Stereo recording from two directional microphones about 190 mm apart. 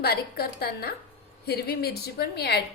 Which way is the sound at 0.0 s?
55° left (ahead or behind).